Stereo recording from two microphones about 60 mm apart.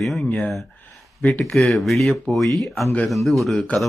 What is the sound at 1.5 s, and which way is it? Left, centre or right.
Speech, centre.